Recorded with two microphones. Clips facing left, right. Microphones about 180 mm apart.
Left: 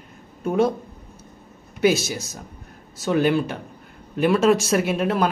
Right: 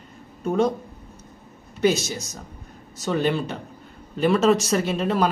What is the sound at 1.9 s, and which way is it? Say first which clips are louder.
Speech: left 2 dB; 55° left (ahead or behind).